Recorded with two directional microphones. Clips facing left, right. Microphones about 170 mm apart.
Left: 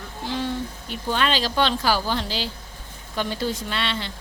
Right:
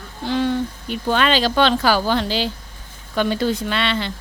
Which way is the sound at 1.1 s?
70° right (ahead or behind).